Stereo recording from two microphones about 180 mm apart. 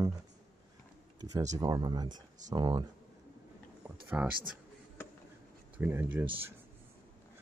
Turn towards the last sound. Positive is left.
turn(degrees=-10)  # may be behind; listen again after turning